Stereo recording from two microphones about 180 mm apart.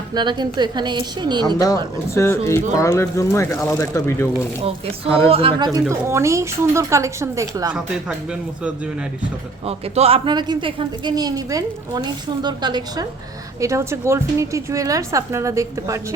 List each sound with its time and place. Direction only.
0.1 s speech: 25° right (ahead or behind)
1.5 s speech: 20° left (ahead or behind)
5.3 s a woman's voice: 30° right (ahead or behind)
9.6 s a woman's voice: 35° right (ahead or behind); by 16.0 s 15° right (ahead or behind)